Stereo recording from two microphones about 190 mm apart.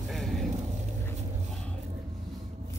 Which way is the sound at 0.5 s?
35° right (ahead or behind).